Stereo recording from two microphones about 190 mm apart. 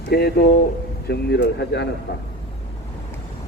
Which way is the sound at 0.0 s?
55° left (ahead or behind).